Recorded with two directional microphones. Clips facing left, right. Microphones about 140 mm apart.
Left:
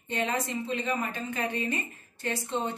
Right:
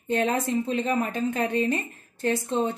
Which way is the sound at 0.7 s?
45° right (ahead or behind).